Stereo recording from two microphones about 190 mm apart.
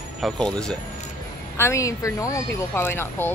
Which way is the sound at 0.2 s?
5° left (ahead or behind).